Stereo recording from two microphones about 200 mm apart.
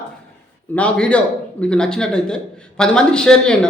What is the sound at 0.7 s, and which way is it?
A man's voice, 5° left (ahead or behind).